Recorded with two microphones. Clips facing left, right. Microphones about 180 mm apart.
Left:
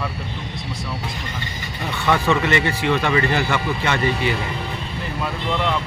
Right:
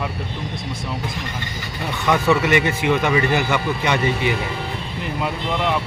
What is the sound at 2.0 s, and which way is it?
Speech, 15° right (ahead or behind).